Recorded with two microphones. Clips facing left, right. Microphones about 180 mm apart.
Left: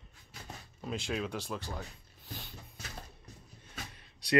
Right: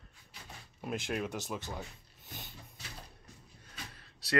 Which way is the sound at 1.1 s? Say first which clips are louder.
Even; 15° right (ahead or behind).